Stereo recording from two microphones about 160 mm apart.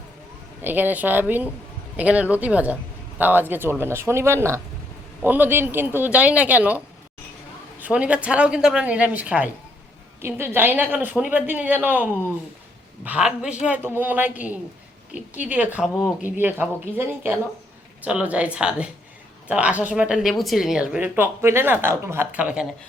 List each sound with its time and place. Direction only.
0.6 s speech: 10° right (ahead or behind)
13.1 s speech: 5° right (ahead or behind)